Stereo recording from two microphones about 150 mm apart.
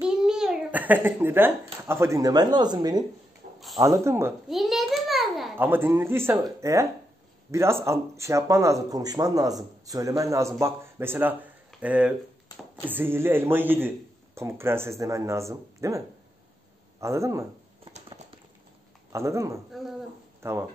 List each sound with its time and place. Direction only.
0.0 s a child's voice: 5° right (ahead or behind)
4.5 s a sound: centre (ahead or behind)
5.6 s a man's voice: 15° right (ahead or behind)
17.0 s speech: 20° right (ahead or behind)
17.9 s a sound: 40° right (ahead or behind)
19.1 s speech: 20° right (ahead or behind)